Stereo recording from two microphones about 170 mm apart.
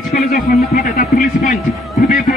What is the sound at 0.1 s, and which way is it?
A man's voice, 60° left (ahead or behind).